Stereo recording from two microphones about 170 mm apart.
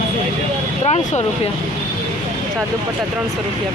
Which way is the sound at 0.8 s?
40° left (ahead or behind).